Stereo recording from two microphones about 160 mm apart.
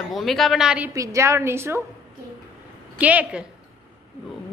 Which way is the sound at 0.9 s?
20° right (ahead or behind).